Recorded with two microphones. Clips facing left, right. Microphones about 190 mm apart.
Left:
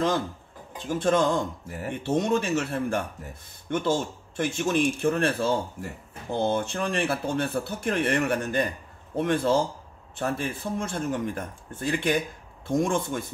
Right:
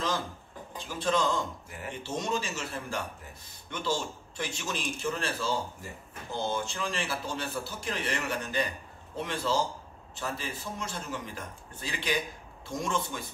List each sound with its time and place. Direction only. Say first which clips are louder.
0.8 s speech: left 6 dB; 50° left (ahead or behind)